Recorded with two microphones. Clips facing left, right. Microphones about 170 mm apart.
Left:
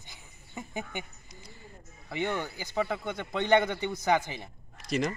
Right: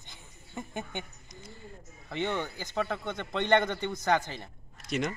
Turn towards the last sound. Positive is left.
turn(degrees=0)  # may be behind; listen again after turning